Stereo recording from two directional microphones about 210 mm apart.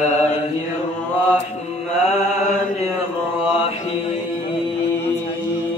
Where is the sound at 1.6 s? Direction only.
30° left (ahead or behind).